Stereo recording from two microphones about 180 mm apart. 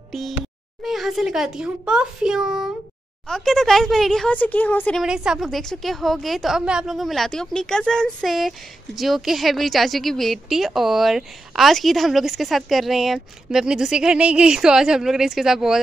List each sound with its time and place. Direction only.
0.8 s a woman's voice: centre (ahead or behind)
5.0 s a woman's voice: 5° right (ahead or behind)